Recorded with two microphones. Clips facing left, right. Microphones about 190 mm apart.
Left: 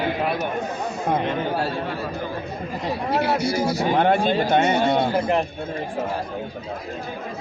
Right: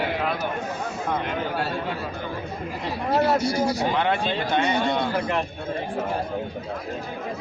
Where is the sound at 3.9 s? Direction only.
45° left (ahead or behind).